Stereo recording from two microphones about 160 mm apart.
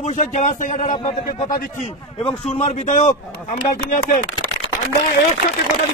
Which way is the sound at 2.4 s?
45° left (ahead or behind).